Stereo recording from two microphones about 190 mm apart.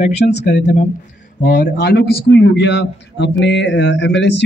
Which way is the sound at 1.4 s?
50° left (ahead or behind).